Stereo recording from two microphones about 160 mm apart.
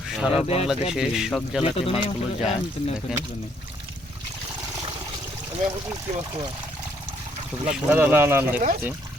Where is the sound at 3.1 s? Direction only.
5° right (ahead or behind).